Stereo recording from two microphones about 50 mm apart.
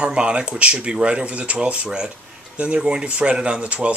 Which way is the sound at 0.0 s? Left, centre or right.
Right.